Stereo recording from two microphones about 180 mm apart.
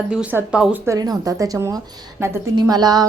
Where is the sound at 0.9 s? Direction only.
20° right (ahead or behind).